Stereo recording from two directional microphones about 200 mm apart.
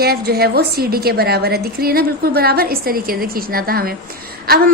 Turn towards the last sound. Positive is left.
turn(degrees=-50)  # may be behind; listen again after turning